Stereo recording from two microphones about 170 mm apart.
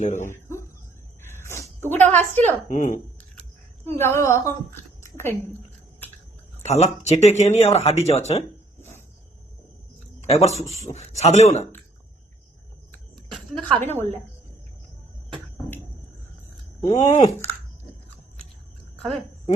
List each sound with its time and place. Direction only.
0.0 s speech: 45° left (ahead or behind)
0.3 s a sound: 15° left (ahead or behind)
2.1 s speech: 10° left (ahead or behind)
2.6 s speech: 50° left (ahead or behind)
3.9 s speech: 15° left (ahead or behind)
5.0 s a sound: 15° left (ahead or behind)
6.6 s speech: 40° left (ahead or behind)
10.2 s speech: 40° left (ahead or behind)
13.3 s a sound: 5° left (ahead or behind)
13.8 s speech: 15° left (ahead or behind)
16.8 s speech: 25° left (ahead or behind)
17.1 s speech: 40° left (ahead or behind)